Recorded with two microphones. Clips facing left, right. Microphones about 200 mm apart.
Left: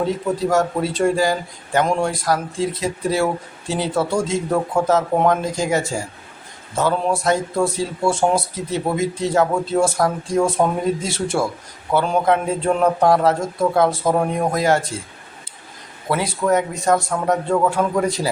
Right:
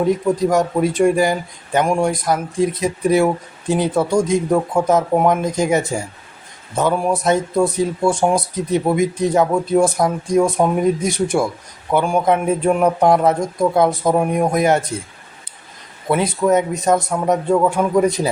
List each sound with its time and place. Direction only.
0.0 s a man's voice: 15° right (ahead or behind)
16.0 s a man's voice: 20° right (ahead or behind)